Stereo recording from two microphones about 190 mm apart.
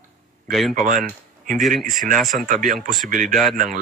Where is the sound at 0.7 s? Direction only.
45° right (ahead or behind).